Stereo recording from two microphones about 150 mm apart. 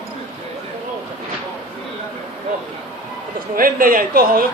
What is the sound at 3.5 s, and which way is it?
Speech, 70° right (ahead or behind).